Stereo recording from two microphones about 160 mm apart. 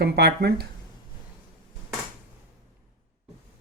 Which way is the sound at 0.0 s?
90° right.